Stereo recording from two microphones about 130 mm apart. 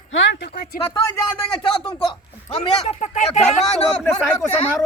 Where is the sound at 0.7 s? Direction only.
90° left.